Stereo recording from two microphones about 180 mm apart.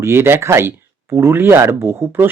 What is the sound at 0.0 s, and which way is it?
Speech, 15° right (ahead or behind).